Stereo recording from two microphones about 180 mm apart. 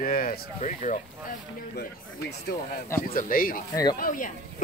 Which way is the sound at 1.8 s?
65° left (ahead or behind).